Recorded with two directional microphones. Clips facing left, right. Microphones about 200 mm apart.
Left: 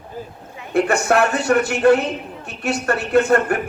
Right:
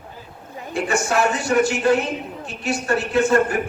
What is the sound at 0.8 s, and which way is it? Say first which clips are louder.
A man's voice: left 4 dB; 60° left (ahead or behind).